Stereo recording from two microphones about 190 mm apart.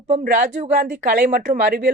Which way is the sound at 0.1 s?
40° right (ahead or behind).